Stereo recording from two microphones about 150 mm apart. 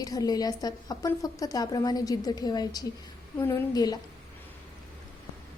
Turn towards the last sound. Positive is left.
turn(degrees=25)  # may be behind; listen again after turning